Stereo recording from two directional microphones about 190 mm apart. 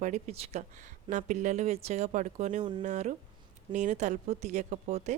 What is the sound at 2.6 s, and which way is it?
Speech, 25° right (ahead or behind).